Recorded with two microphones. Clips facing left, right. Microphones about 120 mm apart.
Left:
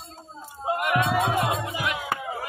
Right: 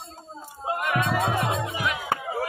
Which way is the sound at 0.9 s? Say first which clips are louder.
Left 1 dB; 15° left (ahead or behind).